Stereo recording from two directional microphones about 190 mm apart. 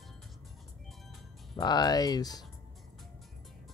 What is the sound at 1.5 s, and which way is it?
Speech, 20° left (ahead or behind).